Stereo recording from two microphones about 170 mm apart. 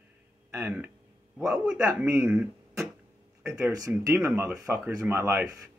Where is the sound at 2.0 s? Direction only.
10° right (ahead or behind).